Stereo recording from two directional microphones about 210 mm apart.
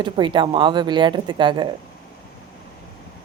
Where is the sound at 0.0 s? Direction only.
20° right (ahead or behind).